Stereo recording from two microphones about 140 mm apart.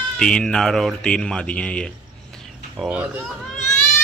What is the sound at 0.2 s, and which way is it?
Speech, 5° left (ahead or behind).